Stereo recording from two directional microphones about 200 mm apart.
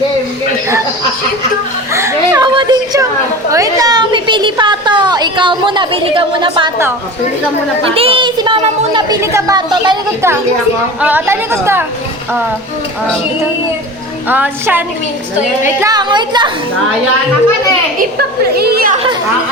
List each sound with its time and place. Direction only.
1.9 s a sound: 15° right (ahead or behind)
7.9 s a child's voice: 30° right (ahead or behind)
11.0 s a woman's voice: 10° right (ahead or behind)
14.3 s a woman's voice: 10° right (ahead or behind)
18.5 s speech: 50° right (ahead or behind)